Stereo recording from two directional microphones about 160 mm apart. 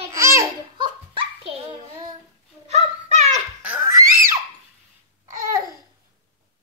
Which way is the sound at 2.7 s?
45° right (ahead or behind).